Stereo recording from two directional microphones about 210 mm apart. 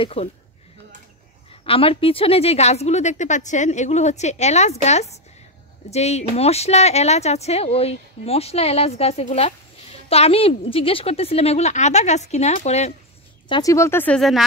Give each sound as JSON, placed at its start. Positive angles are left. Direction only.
{"t": 0.0, "sound": "speech", "side_deg": 30}
{"t": 1.7, "sound": "a woman's voice", "side_deg": 25}
{"t": 13.5, "sound": "speech", "side_deg": 15}